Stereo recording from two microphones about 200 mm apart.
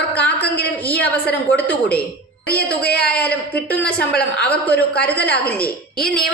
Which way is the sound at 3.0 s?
5° left (ahead or behind).